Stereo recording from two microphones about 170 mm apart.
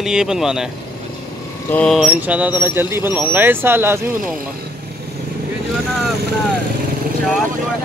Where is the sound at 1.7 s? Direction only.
5° left (ahead or behind); by 4.0 s 15° right (ahead or behind).